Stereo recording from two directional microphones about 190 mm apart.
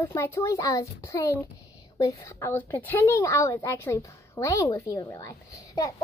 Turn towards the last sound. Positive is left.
turn(degrees=15)  # may be behind; listen again after turning